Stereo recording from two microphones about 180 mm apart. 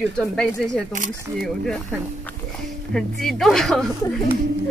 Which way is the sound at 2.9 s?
Centre (ahead or behind).